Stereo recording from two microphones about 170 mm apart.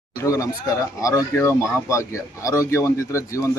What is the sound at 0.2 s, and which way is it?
Speech, 20° left (ahead or behind).